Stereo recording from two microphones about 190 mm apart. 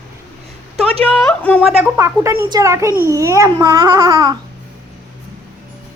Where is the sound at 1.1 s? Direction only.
5° left (ahead or behind).